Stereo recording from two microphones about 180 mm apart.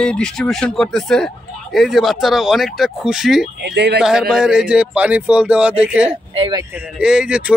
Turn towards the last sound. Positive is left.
turn(degrees=-5)  # may be behind; listen again after turning